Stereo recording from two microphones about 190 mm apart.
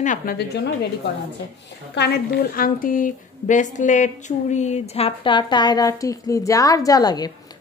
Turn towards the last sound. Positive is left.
turn(degrees=20)  # may be behind; listen again after turning